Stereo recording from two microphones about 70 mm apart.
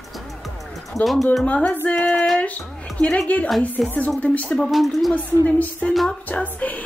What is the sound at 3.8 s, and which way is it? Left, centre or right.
A child's voice, centre.